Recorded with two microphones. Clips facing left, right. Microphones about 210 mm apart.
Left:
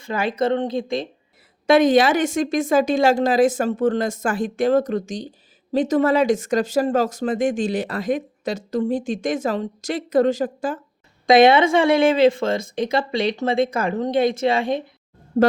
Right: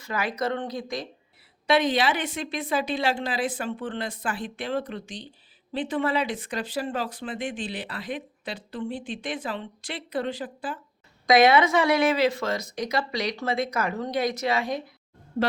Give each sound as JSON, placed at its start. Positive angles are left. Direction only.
{"t": 0.0, "sound": "speech", "side_deg": 25}
{"t": 1.6, "sound": "speech", "side_deg": 45}
{"t": 11.3, "sound": "speech", "side_deg": 30}
{"t": 15.3, "sound": "speech", "side_deg": 45}